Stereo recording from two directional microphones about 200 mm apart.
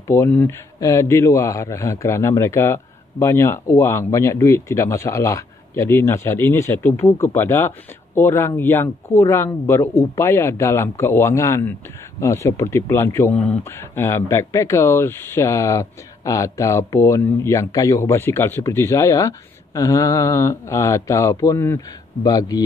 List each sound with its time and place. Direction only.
0.1 s a man's voice: 10° left (ahead or behind)